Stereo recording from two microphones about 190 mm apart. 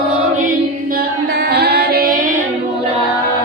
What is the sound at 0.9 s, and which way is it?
Singing, 55° right (ahead or behind).